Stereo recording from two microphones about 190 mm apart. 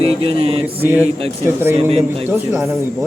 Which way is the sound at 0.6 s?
10° right (ahead or behind).